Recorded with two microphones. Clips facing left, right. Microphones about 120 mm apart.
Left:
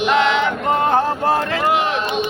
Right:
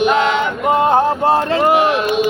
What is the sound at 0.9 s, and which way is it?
Speech, 20° right (ahead or behind).